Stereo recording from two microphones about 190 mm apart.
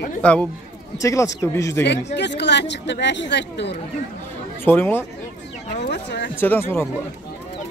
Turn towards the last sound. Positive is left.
turn(degrees=10)  # may be behind; listen again after turning